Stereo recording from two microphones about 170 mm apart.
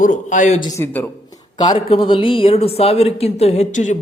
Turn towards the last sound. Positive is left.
turn(degrees=45)  # may be behind; listen again after turning